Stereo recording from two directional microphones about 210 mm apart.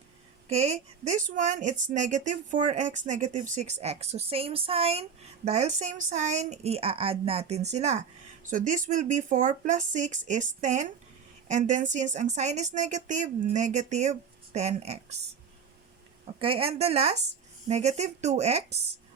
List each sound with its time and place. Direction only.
0.4 s a woman's voice: 30° right (ahead or behind)
16.4 s a woman's voice: 25° right (ahead or behind)